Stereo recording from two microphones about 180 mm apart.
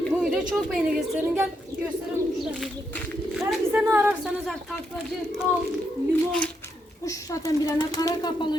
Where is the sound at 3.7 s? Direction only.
10° right (ahead or behind).